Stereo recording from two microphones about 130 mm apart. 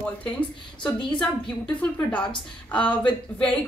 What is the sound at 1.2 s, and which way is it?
Speech, 10° left (ahead or behind).